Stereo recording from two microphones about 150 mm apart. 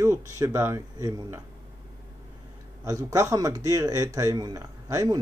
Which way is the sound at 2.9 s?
20° right (ahead or behind).